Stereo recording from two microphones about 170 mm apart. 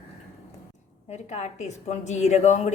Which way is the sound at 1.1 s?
40° left (ahead or behind).